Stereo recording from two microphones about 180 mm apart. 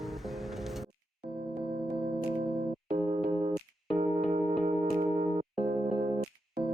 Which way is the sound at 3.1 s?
45° right (ahead or behind).